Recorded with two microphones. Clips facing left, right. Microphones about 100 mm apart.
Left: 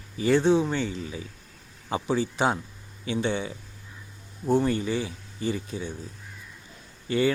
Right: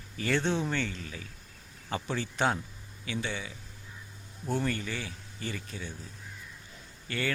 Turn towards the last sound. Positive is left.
turn(degrees=20)  # may be behind; listen again after turning